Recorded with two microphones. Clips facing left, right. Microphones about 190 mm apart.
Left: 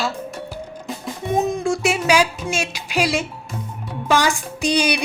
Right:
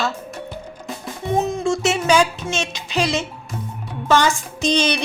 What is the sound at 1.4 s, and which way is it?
Music, 15° left (ahead or behind).